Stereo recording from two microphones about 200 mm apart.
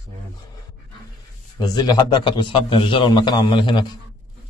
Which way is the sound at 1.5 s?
20° left (ahead or behind).